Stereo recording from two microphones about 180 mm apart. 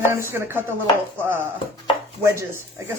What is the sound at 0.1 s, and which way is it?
Speech, 15° right (ahead or behind).